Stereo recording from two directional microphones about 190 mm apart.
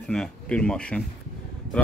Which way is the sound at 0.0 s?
5° left (ahead or behind).